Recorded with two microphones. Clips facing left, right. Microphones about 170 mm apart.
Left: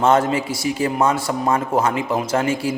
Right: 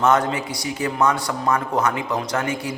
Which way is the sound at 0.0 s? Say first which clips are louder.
Left 2 dB; 25° left (ahead or behind).